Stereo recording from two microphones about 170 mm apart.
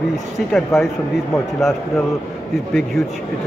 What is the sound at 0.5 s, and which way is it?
A man's voice, centre (ahead or behind).